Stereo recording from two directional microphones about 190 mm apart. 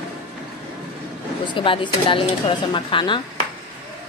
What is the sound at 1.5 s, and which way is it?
A woman's voice, 25° left (ahead or behind).